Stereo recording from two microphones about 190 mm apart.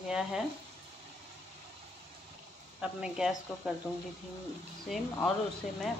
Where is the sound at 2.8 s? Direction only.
5° right (ahead or behind).